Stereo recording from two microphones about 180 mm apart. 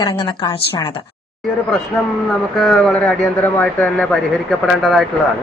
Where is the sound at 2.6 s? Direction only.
Centre (ahead or behind).